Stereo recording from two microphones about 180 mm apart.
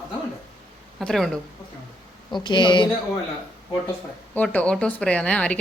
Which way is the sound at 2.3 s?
25° left (ahead or behind).